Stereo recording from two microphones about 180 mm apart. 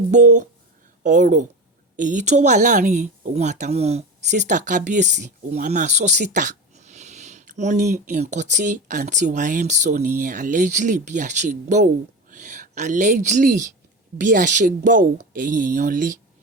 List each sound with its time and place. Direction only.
0.1 s a woman's voice: 45° right (ahead or behind)